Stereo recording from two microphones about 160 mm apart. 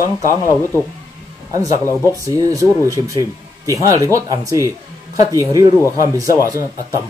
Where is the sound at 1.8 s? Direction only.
15° left (ahead or behind).